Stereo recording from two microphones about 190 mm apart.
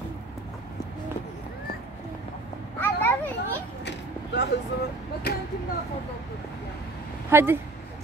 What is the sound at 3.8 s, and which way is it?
Vehicle, 65° left (ahead or behind).